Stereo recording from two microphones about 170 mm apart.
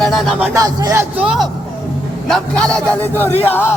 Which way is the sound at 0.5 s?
20° right (ahead or behind).